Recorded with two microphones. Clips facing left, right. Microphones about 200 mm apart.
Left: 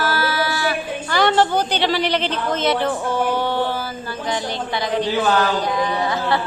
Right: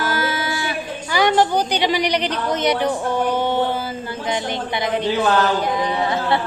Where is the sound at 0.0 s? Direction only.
20° right (ahead or behind).